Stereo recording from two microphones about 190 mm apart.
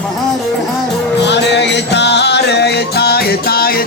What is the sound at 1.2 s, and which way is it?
Music, 65° left (ahead or behind).